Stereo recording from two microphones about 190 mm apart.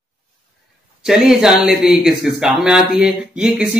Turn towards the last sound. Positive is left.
turn(degrees=-5)  # may be behind; listen again after turning